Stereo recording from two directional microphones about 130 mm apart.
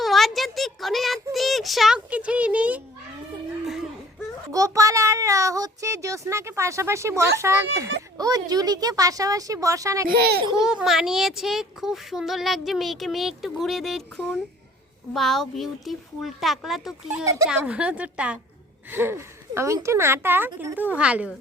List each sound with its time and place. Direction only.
0.0 s a sound: centre (ahead or behind)
4.5 s child singing: 25° right (ahead or behind)
10.6 s speech: 5° right (ahead or behind)
17.2 s speech: 25° right (ahead or behind)
17.5 s a woman's voice: 10° right (ahead or behind)